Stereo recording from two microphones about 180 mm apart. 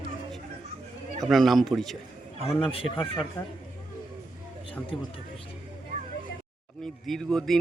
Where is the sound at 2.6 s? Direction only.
30° left (ahead or behind).